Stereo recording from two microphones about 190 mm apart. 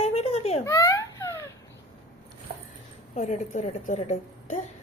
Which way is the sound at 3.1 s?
40° left (ahead or behind).